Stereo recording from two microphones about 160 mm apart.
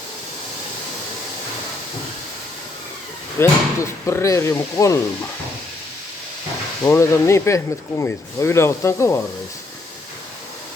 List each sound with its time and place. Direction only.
3.4 s speech: 20° left (ahead or behind)
6.8 s speech: 15° left (ahead or behind)